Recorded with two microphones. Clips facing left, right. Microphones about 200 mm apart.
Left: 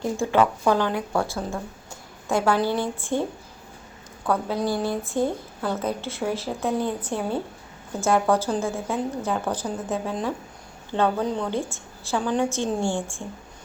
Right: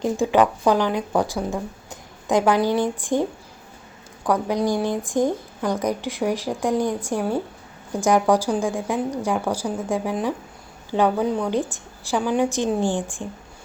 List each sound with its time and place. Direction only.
0.0 s speech: 15° right (ahead or behind)
4.3 s speech: 15° right (ahead or behind)